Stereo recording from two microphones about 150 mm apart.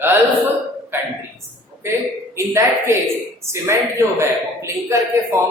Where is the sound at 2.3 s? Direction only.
20° right (ahead or behind).